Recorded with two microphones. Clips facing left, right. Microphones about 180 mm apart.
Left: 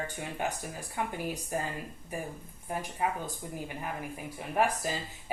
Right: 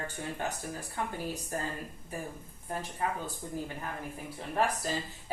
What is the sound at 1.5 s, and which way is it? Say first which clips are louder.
Speech: left 3 dB; 15° left (ahead or behind).